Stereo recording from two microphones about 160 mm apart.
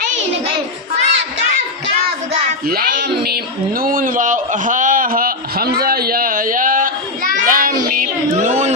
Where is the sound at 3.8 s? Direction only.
60° right (ahead or behind).